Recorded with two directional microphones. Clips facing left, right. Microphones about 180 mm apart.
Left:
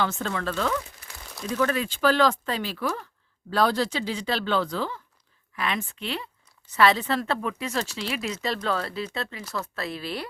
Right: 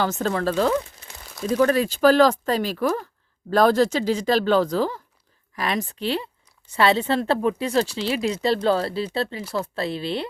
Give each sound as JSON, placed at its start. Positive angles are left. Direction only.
{"t": 0.0, "sound": "speech", "side_deg": -40}